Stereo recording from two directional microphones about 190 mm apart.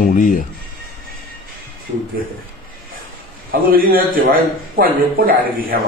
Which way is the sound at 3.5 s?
50° right (ahead or behind).